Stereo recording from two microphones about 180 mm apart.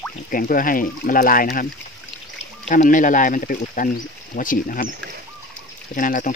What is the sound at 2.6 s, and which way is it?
Speech, 45° left (ahead or behind).